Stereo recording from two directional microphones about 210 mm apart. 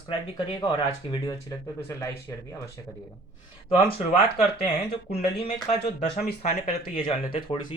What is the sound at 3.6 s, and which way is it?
Speech, 25° left (ahead or behind).